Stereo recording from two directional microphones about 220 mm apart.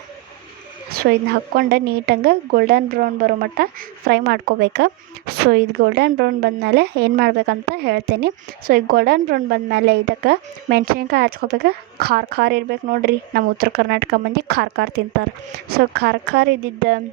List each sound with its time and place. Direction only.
1.3 s a woman's voice: 45° right (ahead or behind)